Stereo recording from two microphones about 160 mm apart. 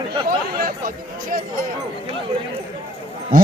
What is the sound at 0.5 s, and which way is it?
Chatter, 65° right (ahead or behind).